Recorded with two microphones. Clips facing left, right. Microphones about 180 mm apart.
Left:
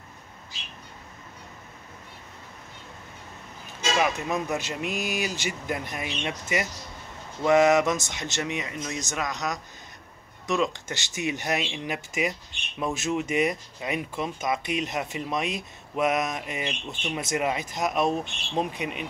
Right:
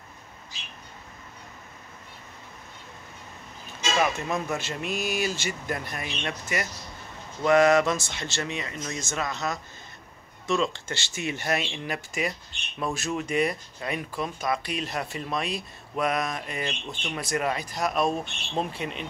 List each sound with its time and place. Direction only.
4.0 s speech: centre (ahead or behind)
4.6 s speech: 15° left (ahead or behind)